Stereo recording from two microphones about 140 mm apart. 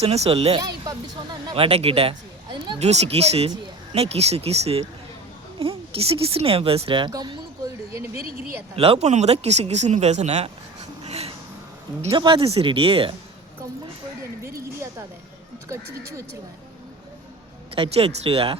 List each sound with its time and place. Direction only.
0.0 s speech: 50° right (ahead or behind)
2.7 s speech: 50° right (ahead or behind); by 7.3 s 30° right (ahead or behind)
8.2 s speech: 90° right
8.7 s speech: 45° right (ahead or behind)
11.0 s a sound: 50° right (ahead or behind)
12.1 s speech: 35° right (ahead or behind)
14.4 s a sound: 20° right (ahead or behind)
15.7 s speech: 20° right (ahead or behind)
17.7 s speech: 45° right (ahead or behind)